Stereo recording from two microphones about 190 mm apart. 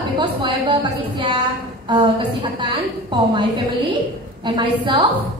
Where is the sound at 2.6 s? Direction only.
25° right (ahead or behind).